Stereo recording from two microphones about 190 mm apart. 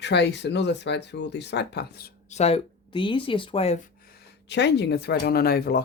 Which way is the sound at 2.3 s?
35° left (ahead or behind).